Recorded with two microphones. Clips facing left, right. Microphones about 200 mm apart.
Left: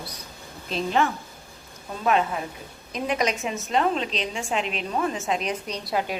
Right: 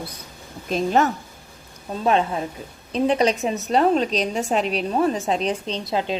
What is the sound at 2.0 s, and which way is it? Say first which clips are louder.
A woman's voice: right 3 dB; 30° right (ahead or behind).